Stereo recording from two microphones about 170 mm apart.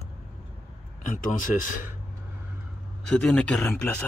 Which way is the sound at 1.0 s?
50° left (ahead or behind).